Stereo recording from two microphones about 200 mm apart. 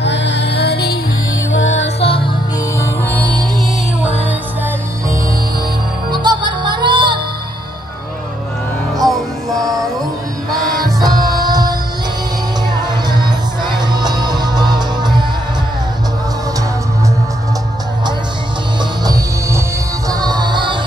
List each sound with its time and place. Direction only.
0.0 s music: 60° left (ahead or behind)
1.5 s music: 70° left (ahead or behind)
2.8 s music: 10° left (ahead or behind)
6.1 s music: 20° right (ahead or behind)
8.9 s music: centre (ahead or behind)
10.8 s music: 20° right (ahead or behind)
13.1 s music: 20° right (ahead or behind)
19.0 s music: 15° right (ahead or behind)